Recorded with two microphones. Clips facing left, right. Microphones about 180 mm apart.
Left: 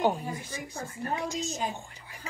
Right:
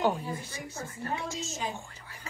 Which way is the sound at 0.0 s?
15° left (ahead or behind).